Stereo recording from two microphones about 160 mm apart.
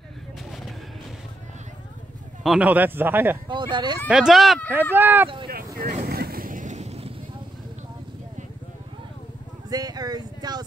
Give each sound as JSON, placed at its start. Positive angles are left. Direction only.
{"t": 2.4, "sound": "a man's voice", "side_deg": -5}
{"t": 3.4, "sound": "speech", "side_deg": -30}
{"t": 4.1, "sound": "speech", "side_deg": -5}
{"t": 4.9, "sound": "a man's voice", "side_deg": -10}
{"t": 5.5, "sound": "vehicle", "side_deg": -65}
{"t": 6.0, "sound": "boat", "side_deg": -70}
{"t": 9.7, "sound": "speech", "side_deg": -25}